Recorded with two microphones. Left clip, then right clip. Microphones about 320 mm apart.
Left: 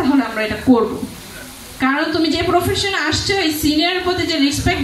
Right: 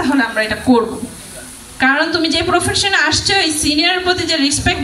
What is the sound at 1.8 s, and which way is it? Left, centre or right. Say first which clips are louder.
A woman's voice: right 4 dB; right.